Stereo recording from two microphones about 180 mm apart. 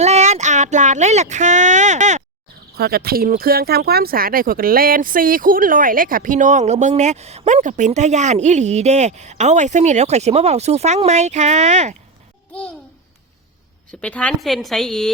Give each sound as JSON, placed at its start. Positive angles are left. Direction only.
{"t": 0.0, "sound": "speech", "side_deg": -40}
{"t": 2.7, "sound": "speech", "side_deg": -60}
{"t": 14.0, "sound": "a woman's voice", "side_deg": 5}